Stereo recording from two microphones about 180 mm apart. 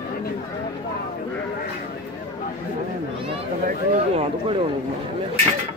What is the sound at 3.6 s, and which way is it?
Speech, 45° right (ahead or behind).